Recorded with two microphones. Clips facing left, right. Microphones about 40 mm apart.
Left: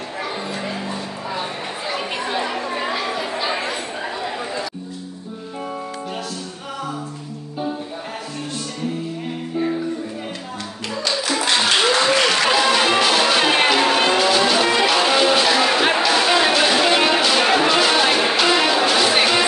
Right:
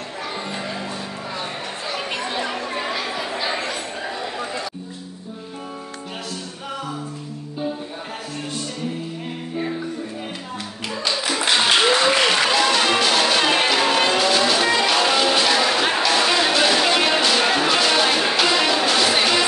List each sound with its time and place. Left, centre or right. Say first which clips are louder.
1.9 s chatter: left 2 dB; centre
11.2 s applause: even; centre
12.4 s music: left 2 dB; centre